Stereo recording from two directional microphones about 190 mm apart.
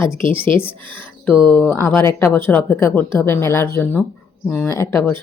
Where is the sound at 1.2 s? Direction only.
15° left (ahead or behind).